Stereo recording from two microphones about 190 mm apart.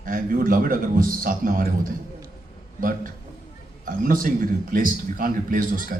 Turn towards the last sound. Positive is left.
turn(degrees=-50)  # may be behind; listen again after turning